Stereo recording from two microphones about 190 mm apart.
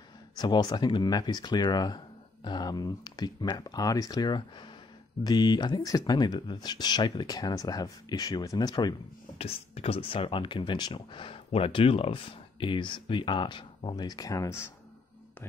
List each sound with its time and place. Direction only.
0.4 s speech: 20° left (ahead or behind)
9.4 s speech: 30° left (ahead or behind); by 14.7 s 15° left (ahead or behind)